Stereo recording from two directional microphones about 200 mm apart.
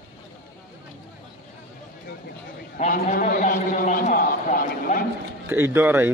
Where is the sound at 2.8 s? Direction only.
40° left (ahead or behind).